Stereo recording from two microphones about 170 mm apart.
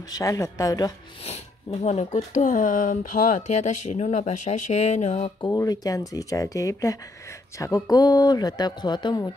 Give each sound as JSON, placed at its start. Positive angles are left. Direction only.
{"t": 0.1, "sound": "speech", "side_deg": 20}
{"t": 1.2, "sound": "speech", "side_deg": 40}
{"t": 5.5, "sound": "speech", "side_deg": 20}